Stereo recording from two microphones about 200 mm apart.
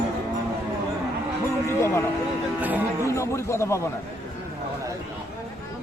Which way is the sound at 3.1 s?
15° left (ahead or behind).